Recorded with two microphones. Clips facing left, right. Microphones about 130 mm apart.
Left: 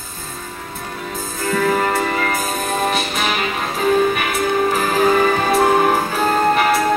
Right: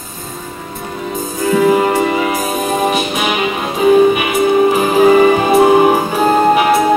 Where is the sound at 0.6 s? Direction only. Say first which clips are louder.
Right 6 dB; 5° right (ahead or behind).